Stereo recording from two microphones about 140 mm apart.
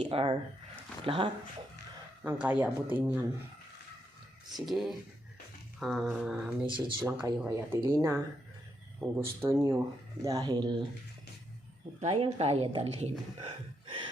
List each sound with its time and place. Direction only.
0.1 s speech: 45° right (ahead or behind)
2.2 s speech: 10° right (ahead or behind)
4.5 s speech: centre (ahead or behind)
6.7 s speech: 35° right (ahead or behind)
7.0 s speech: 20° right (ahead or behind)
12.1 s speech: 45° right (ahead or behind)